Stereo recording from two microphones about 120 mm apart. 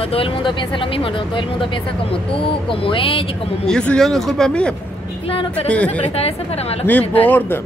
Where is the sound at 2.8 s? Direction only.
50° left (ahead or behind).